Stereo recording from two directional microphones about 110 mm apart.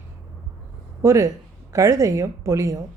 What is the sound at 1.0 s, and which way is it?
Speech, 25° right (ahead or behind).